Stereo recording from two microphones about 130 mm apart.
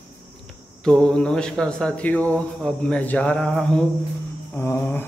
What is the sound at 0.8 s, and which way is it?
Speech, 5° left (ahead or behind).